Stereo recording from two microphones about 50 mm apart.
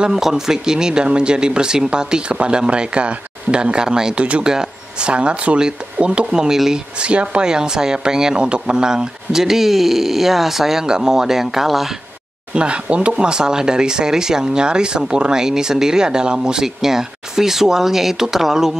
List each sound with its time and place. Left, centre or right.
0.1 s speech: centre
4.2 s speech: right
7.0 s speech: right; by 12.0 s centre
12.5 s speech: right